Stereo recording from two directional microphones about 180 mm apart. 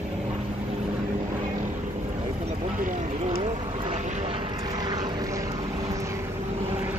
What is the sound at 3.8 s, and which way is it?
Vehicle, 35° right (ahead or behind).